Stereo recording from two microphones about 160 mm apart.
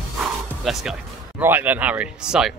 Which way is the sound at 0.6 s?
Centre (ahead or behind).